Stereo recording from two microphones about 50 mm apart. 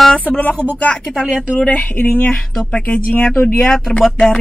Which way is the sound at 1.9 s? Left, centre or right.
Left.